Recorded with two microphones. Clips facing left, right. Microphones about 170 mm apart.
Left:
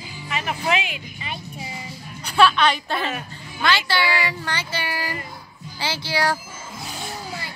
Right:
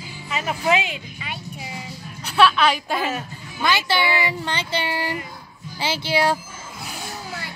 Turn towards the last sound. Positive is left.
turn(degrees=-20)  # may be behind; listen again after turning